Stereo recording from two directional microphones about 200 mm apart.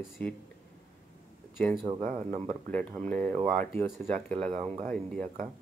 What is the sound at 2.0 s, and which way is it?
Speech, 35° right (ahead or behind).